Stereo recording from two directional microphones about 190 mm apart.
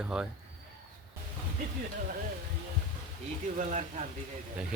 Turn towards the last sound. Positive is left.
turn(degrees=-40)  # may be behind; listen again after turning